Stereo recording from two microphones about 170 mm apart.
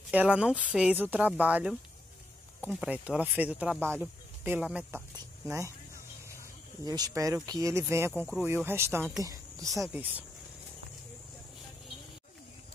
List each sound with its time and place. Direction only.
0.1 s speech: 5° right (ahead or behind)
2.8 s speech: 5° right (ahead or behind)
6.8 s speech: 20° right (ahead or behind)
9.8 s speech: 10° right (ahead or behind)